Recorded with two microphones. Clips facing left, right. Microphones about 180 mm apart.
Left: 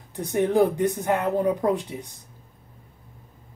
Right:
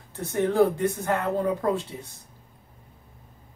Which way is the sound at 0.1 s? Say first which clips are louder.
Left 3 dB; 15° left (ahead or behind).